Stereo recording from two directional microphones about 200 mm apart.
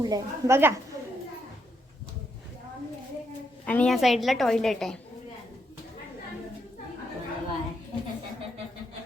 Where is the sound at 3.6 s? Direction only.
5° left (ahead or behind).